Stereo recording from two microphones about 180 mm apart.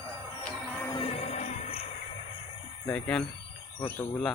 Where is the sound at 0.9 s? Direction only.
35° left (ahead or behind).